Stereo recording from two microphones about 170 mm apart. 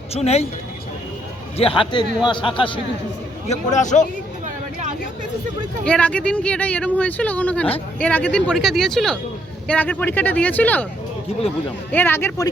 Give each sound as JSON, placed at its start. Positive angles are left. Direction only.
{"t": 0.1, "sound": "a man's voice", "side_deg": 40}
{"t": 1.5, "sound": "a man's voice", "side_deg": 35}
{"t": 3.5, "sound": "a man's voice", "side_deg": 45}
{"t": 4.4, "sound": "a sound", "side_deg": -45}
{"t": 5.8, "sound": "speech", "side_deg": 5}
{"t": 11.9, "sound": "speech", "side_deg": 10}